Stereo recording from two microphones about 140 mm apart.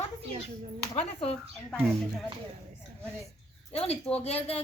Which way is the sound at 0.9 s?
45° left (ahead or behind).